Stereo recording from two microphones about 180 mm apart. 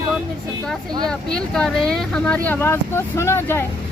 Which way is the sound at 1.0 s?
5° left (ahead or behind).